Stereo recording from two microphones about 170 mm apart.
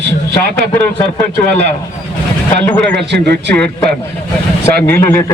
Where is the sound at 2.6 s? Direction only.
10° left (ahead or behind).